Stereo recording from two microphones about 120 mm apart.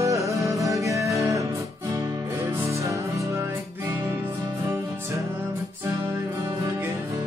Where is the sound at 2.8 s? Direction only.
25° right (ahead or behind).